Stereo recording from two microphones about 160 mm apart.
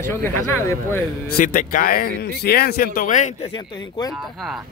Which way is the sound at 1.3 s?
65° left (ahead or behind).